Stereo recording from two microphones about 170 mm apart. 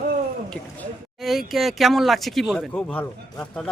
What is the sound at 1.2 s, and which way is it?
Speech, centre (ahead or behind).